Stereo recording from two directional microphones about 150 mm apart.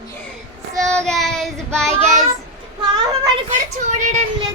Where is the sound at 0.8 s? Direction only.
5° left (ahead or behind).